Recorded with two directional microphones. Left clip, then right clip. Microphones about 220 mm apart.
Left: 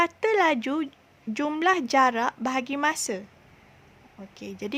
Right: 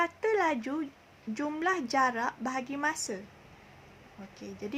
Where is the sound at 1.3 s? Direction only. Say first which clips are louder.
Left 7 dB; 45° left (ahead or behind).